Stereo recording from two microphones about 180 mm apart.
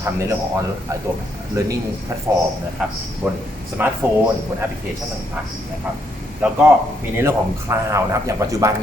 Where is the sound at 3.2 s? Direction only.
10° right (ahead or behind).